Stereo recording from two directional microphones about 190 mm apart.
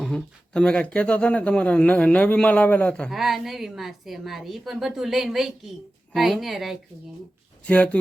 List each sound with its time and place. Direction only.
0.0 s speech: 5° left (ahead or behind)